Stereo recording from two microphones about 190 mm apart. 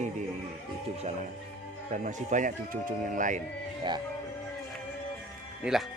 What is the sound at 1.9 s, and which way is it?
Speech, 40° right (ahead or behind).